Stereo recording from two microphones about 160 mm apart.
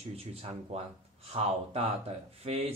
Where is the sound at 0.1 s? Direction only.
40° right (ahead or behind).